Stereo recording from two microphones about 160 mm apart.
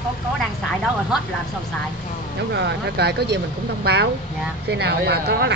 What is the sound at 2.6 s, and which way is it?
Speech, 90° right.